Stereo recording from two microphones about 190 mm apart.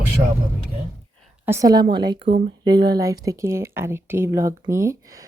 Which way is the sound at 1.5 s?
15° right (ahead or behind).